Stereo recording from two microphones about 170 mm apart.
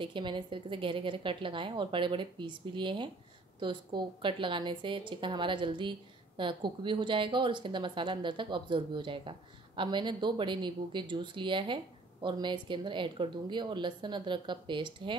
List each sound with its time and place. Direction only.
0.0 s a woman's voice: 30° right (ahead or behind)